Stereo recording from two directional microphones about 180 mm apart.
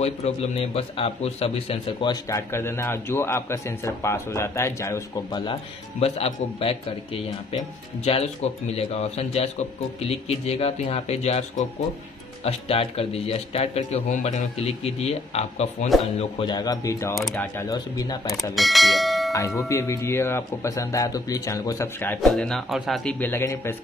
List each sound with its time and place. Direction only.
0.0 s a man's voice: 35° left (ahead or behind)
8.0 s a man's voice: 35° left (ahead or behind)
18.4 s speech: centre (ahead or behind)
19.3 s a man's voice: 15° left (ahead or behind)